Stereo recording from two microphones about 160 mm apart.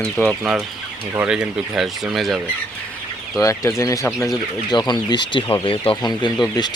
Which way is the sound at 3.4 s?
20° left (ahead or behind).